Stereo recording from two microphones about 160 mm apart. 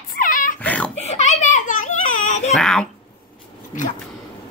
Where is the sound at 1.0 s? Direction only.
45° left (ahead or behind).